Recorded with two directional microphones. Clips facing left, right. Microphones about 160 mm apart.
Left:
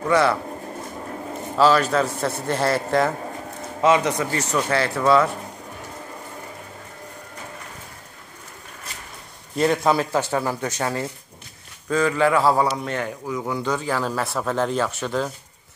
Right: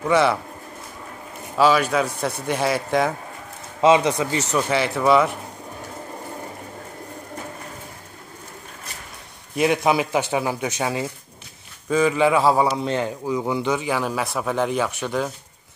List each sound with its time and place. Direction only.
0.1 s a man's voice: 20° right (ahead or behind)
1.6 s speech: 10° right (ahead or behind)
3.8 s a man's voice: 25° right (ahead or behind)
9.6 s a man's voice: 15° right (ahead or behind)